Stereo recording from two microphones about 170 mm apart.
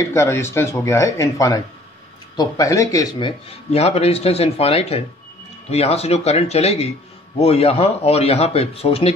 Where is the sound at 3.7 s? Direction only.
35° left (ahead or behind).